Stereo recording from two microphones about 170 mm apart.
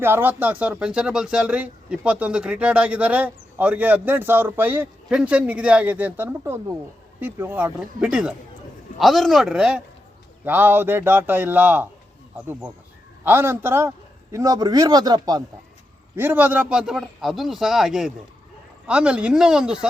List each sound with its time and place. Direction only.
0.0 s a man's voice: 10° right (ahead or behind)
16.1 s speech: 10° right (ahead or behind)